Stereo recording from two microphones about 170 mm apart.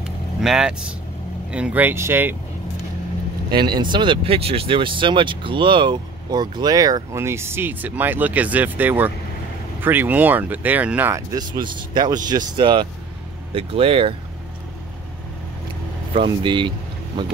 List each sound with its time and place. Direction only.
0.4 s speech: 5° right (ahead or behind)
3.6 s speech: 25° right (ahead or behind)
16.2 s speech: 30° right (ahead or behind)